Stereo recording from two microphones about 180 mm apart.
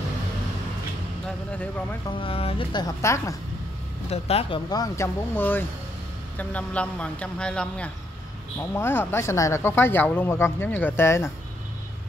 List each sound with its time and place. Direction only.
1.2 s speech: 10° left (ahead or behind)
2.0 s a woman's voice: 30° left (ahead or behind)
4.1 s speech: 35° left (ahead or behind)
4.6 s speech: 20° left (ahead or behind)